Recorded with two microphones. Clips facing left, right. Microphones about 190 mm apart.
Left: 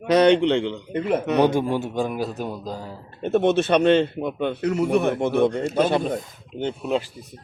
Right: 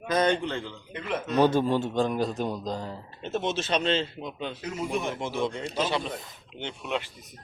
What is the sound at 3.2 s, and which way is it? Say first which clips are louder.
Speech: left 11 dB; 60° left (ahead or behind).